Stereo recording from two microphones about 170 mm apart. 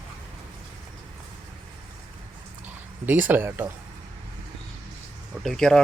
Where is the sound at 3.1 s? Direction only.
10° right (ahead or behind).